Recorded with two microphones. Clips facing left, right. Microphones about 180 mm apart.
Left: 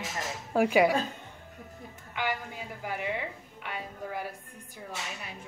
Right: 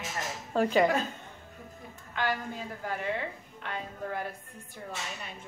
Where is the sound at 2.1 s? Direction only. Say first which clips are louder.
Right 2 dB; 10° left (ahead or behind).